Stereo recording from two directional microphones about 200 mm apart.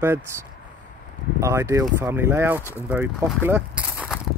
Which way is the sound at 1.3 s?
15° right (ahead or behind).